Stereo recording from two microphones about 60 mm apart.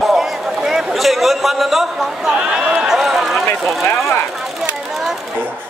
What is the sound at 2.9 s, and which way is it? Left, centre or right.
Run, centre.